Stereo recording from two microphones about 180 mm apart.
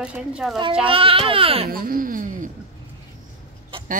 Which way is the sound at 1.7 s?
50° right (ahead or behind).